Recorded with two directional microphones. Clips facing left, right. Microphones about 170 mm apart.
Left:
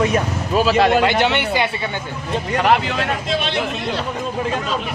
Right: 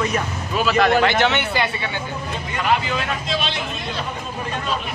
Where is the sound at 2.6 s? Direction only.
65° left (ahead or behind).